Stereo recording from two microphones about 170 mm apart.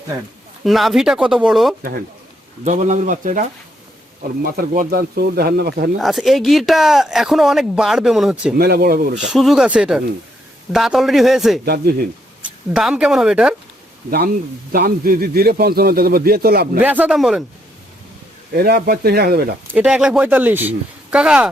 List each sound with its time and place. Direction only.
0.6 s speech: centre (ahead or behind)
2.6 s speech: 45° right (ahead or behind)
4.4 s a man's voice: 55° right (ahead or behind)
6.0 s speech: centre (ahead or behind)
8.5 s a man's voice: 65° right (ahead or behind)
9.2 s speech: centre (ahead or behind)
11.6 s speech: 70° right (ahead or behind)
12.7 s speech: 5° right (ahead or behind)
14.7 s a man's voice: 60° right (ahead or behind)
16.8 s speech: 10° right (ahead or behind)
18.5 s a man's voice: 65° right (ahead or behind)
19.7 s speech: 5° right (ahead or behind)